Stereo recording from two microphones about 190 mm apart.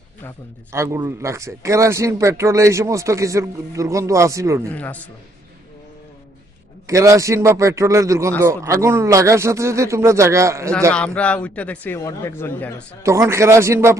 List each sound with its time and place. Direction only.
0.7 s a man's voice: 15° right (ahead or behind)
4.7 s a man's voice: 10° left (ahead or behind)
6.8 s a man's voice: 15° right (ahead or behind)
10.9 s a man's voice: 5° left (ahead or behind)
13.0 s a man's voice: 15° right (ahead or behind)